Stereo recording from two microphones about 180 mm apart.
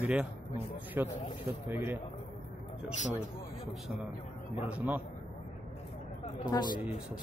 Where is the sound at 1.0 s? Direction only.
10° right (ahead or behind).